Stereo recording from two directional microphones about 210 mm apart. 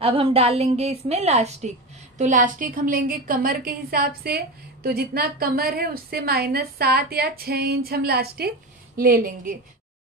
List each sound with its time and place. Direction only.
0.0 s a woman's voice: 25° right (ahead or behind); by 9.6 s 40° right (ahead or behind)